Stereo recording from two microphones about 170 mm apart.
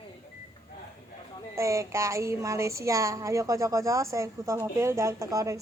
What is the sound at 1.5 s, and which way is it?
Speech, 20° right (ahead or behind).